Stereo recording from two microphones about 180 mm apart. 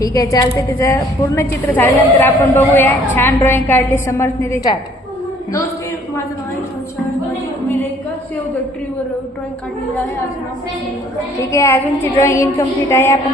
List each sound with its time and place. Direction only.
0.0 s a woman's voice: 20° left (ahead or behind)
11.3 s a woman's voice: 15° left (ahead or behind)